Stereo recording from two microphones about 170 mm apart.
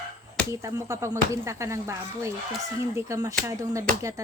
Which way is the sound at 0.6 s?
15° right (ahead or behind).